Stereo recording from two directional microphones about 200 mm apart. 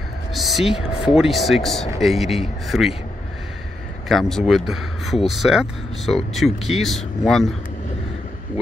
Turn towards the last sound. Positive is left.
turn(degrees=0)  # may be behind; listen again after turning